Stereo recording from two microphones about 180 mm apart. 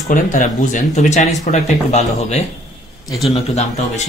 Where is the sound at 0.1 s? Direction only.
45° left (ahead or behind).